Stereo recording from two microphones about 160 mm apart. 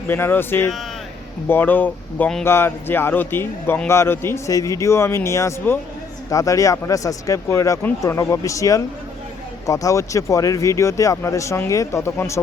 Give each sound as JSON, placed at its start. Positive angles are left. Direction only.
{"t": 0.1, "sound": "speech", "side_deg": 15}